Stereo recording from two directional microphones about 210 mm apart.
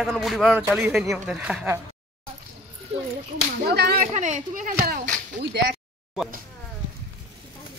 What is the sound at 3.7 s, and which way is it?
Speech, 50° right (ahead or behind).